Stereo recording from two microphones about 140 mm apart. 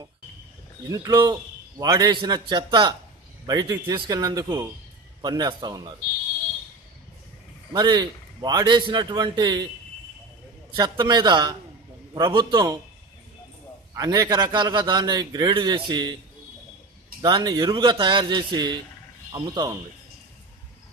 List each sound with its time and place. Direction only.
0.9 s a man's voice: 25° right (ahead or behind)
7.7 s a man's voice: 30° right (ahead or behind)
10.8 s a man's voice: 30° right (ahead or behind)
13.9 s a man's voice: 25° right (ahead or behind)
17.2 s a man's voice: 30° right (ahead or behind)